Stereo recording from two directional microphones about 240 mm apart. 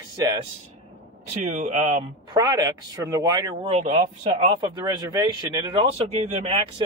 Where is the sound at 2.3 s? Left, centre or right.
Centre.